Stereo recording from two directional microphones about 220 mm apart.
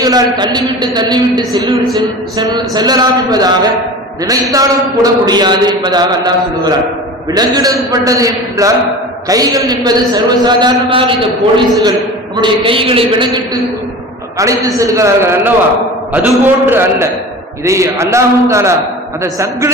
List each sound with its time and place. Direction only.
0.0 s a man's voice: 20° right (ahead or behind)
14.8 s speech: 15° right (ahead or behind)